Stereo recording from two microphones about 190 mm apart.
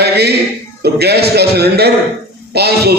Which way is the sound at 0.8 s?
55° right (ahead or behind).